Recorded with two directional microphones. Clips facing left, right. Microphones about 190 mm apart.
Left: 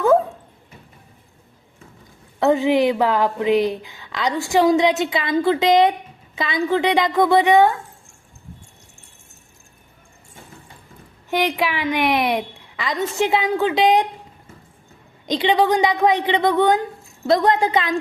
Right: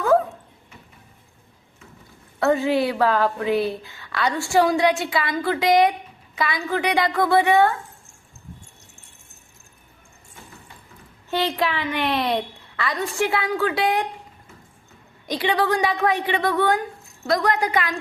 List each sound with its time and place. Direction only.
2.4 s a woman's voice: 15° left (ahead or behind)
11.3 s a woman's voice: 15° left (ahead or behind)
15.3 s a woman's voice: 20° left (ahead or behind)